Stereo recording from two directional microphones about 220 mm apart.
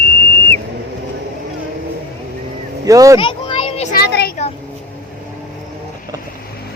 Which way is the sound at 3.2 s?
20° left (ahead or behind).